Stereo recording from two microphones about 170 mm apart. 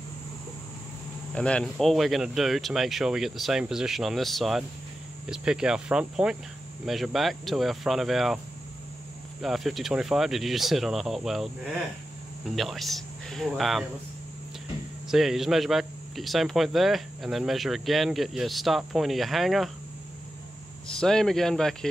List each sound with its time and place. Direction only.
1.3 s speech: 5° left (ahead or behind)
9.4 s speech: centre (ahead or behind)
15.0 s speech: centre (ahead or behind)
20.8 s speech: 5° left (ahead or behind)